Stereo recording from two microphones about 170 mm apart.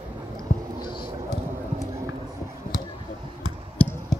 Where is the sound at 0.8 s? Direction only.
25° left (ahead or behind).